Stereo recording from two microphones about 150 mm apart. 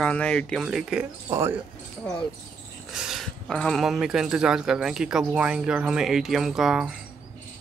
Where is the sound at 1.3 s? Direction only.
15° right (ahead or behind).